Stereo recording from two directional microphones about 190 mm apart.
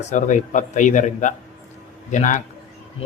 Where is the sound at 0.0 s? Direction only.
40° left (ahead or behind).